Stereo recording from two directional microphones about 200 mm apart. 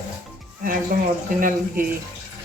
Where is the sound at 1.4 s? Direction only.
45° right (ahead or behind).